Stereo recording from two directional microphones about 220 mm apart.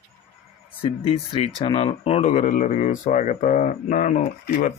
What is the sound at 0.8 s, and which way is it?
Speech, 25° left (ahead or behind).